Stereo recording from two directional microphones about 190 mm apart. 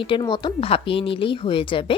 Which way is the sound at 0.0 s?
25° left (ahead or behind).